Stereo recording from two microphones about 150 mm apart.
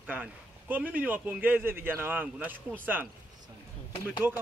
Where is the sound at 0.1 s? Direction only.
10° right (ahead or behind).